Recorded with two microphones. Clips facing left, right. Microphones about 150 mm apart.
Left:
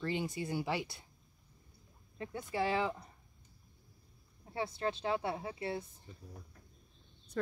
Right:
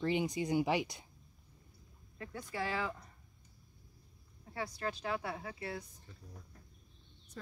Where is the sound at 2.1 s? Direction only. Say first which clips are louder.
Left 4 dB; 25° left (ahead or behind).